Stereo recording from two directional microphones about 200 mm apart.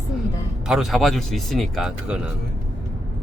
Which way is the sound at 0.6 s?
Centre (ahead or behind).